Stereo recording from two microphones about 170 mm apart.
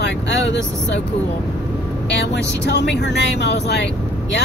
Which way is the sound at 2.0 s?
90° left.